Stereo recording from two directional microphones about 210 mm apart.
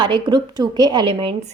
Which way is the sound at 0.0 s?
20° right (ahead or behind).